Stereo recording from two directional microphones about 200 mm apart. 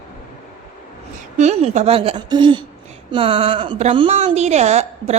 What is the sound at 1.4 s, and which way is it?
A woman's voice, 35° right (ahead or behind).